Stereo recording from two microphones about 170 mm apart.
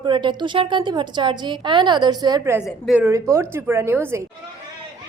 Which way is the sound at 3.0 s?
15° right (ahead or behind).